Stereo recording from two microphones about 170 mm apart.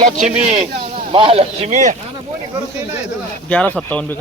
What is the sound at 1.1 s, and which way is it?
Speech, 35° right (ahead or behind).